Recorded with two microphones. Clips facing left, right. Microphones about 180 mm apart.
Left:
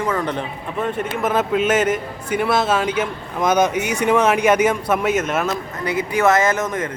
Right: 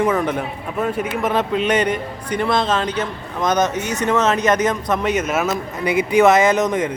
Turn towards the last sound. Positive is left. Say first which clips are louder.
# right 3 dB
turn(degrees=-15)  # may be behind; listen again after turning